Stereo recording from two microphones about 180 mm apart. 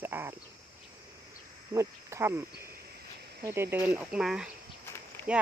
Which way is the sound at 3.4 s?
15° right (ahead or behind).